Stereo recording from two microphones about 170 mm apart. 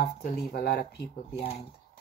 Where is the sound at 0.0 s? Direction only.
65° left (ahead or behind).